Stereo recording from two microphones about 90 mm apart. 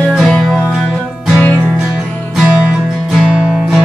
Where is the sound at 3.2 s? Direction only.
10° right (ahead or behind).